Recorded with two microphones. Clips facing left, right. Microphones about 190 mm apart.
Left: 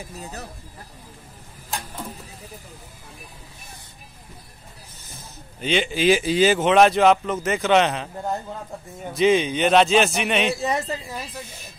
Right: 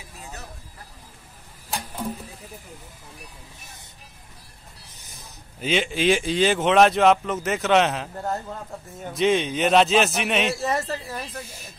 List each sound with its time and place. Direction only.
0.0 s speech: 40° left (ahead or behind)
5.6 s speech: centre (ahead or behind)
9.1 s speech: centre (ahead or behind)
10.6 s speech: 15° left (ahead or behind)